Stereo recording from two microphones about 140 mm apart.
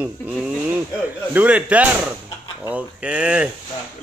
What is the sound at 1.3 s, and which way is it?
Speech, 10° right (ahead or behind).